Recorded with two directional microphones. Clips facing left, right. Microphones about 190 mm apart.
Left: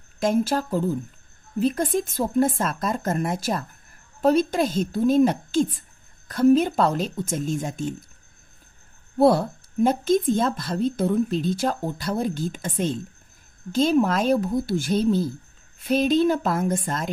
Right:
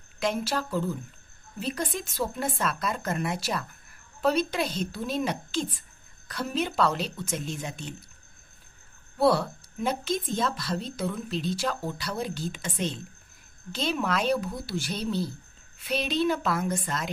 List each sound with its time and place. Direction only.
0.2 s speech: 45° left (ahead or behind)
9.2 s speech: 50° left (ahead or behind)